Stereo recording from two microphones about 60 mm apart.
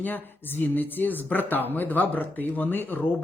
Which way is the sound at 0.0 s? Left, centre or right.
Left.